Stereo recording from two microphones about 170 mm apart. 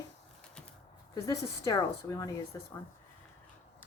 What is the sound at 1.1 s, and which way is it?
Speech, 20° left (ahead or behind).